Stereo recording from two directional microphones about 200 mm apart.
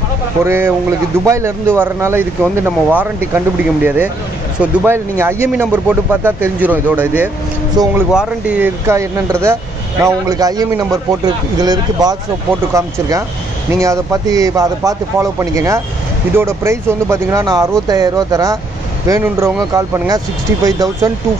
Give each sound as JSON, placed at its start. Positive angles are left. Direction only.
{"t": 0.4, "sound": "speech", "side_deg": -10}
{"t": 7.8, "sound": "a man's voice", "side_deg": -20}
{"t": 8.1, "sound": "a man's voice", "side_deg": -5}
{"t": 13.7, "sound": "speech", "side_deg": -15}